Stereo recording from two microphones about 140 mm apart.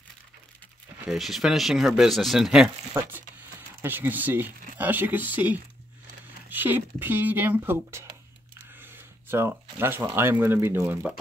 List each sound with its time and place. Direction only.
1.0 s speech: centre (ahead or behind)
2.9 s speech: 15° right (ahead or behind)